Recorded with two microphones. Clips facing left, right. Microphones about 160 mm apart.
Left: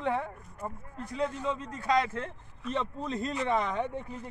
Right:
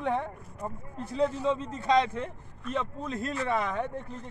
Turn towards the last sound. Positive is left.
turn(degrees=-10)  # may be behind; listen again after turning